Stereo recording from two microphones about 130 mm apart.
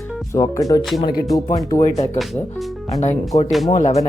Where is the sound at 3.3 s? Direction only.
60° left (ahead or behind).